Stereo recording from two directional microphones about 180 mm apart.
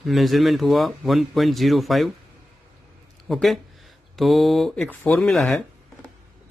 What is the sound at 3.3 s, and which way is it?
Speech, centre (ahead or behind).